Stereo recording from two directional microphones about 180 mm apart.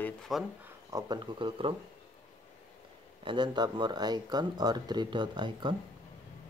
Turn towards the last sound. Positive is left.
turn(degrees=-25)  # may be behind; listen again after turning